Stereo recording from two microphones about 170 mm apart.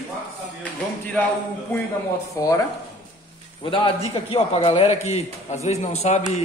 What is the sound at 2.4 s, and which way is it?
Speech, 20° left (ahead or behind).